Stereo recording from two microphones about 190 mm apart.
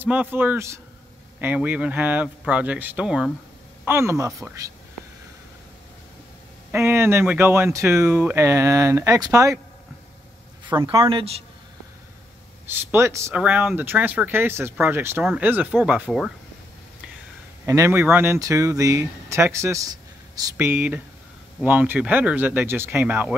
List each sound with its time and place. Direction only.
0.0 s speech: 10° right (ahead or behind)
6.7 s speech: 10° right (ahead or behind)
10.7 s speech: 25° right (ahead or behind)
12.6 s speech: 10° right (ahead or behind)
17.6 s speech: 15° right (ahead or behind)